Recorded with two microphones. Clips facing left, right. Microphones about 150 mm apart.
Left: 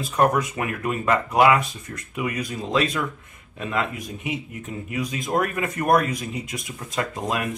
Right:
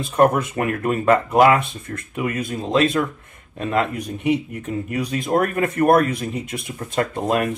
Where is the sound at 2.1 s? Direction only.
45° right (ahead or behind).